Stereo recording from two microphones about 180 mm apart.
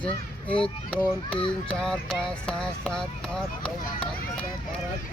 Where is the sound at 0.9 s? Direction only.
5° left (ahead or behind).